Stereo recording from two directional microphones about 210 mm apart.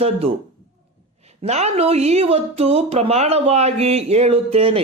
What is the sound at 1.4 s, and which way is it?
Speech, 30° right (ahead or behind).